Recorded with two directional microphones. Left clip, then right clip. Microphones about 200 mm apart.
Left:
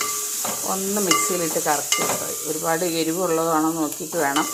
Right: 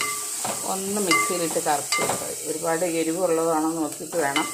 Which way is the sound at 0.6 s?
5° left (ahead or behind).